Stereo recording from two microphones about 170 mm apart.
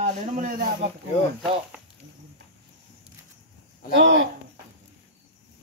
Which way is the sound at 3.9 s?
90° right.